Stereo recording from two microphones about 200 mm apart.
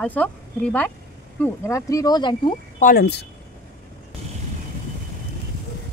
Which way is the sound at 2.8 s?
50° left (ahead or behind).